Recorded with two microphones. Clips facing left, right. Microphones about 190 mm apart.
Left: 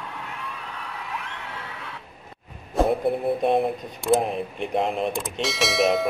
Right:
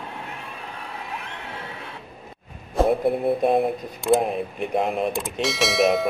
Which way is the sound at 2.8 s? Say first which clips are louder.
Right 1 dB; centre (ahead or behind).